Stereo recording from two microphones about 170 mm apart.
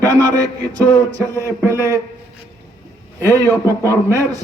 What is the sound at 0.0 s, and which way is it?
Music, 20° right (ahead or behind).